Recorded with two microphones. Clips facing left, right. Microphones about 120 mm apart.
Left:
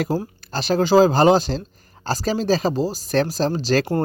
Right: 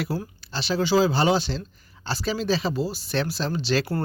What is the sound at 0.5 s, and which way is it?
Speech, 45° left (ahead or behind).